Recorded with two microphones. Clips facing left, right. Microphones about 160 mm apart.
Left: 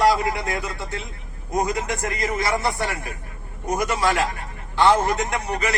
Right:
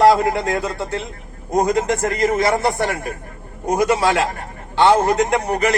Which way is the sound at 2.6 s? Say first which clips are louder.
Right 5 dB; 55° right (ahead or behind).